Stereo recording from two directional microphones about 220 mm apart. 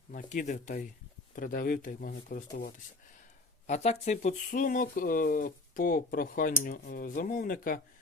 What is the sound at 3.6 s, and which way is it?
Speech, 30° left (ahead or behind).